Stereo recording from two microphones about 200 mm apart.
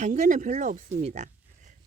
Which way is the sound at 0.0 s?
35° right (ahead or behind).